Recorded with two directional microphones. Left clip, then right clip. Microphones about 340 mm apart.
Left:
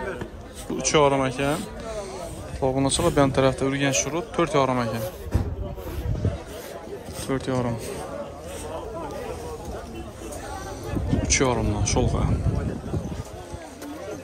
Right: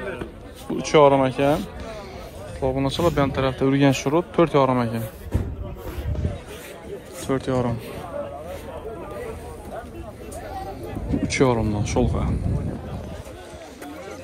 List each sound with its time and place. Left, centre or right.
0.7 s speech: centre
2.6 s speech: centre
7.2 s speech: centre
11.2 s speech: centre